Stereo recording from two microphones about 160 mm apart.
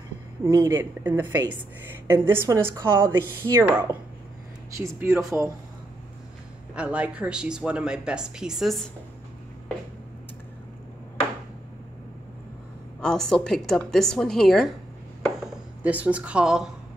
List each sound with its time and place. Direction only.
0.7 s speech: 15° right (ahead or behind)
6.7 s speech: 5° right (ahead or behind)
13.0 s speech: 5° left (ahead or behind)